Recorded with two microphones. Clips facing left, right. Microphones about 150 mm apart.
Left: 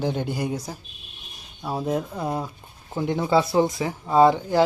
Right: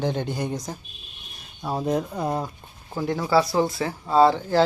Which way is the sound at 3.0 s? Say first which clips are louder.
Even; 20° left (ahead or behind).